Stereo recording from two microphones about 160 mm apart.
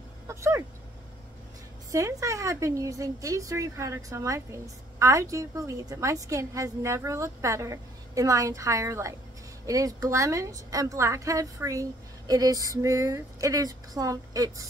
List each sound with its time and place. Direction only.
0.3 s speech: 20° right (ahead or behind)
1.9 s a woman's voice: 20° right (ahead or behind)